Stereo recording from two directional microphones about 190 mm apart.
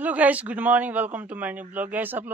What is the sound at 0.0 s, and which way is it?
Speech, 10° right (ahead or behind).